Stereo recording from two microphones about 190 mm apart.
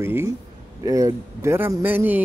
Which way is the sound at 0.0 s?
15° right (ahead or behind).